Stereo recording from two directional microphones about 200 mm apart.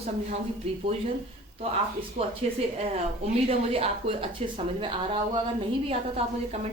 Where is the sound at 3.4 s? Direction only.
30° right (ahead or behind).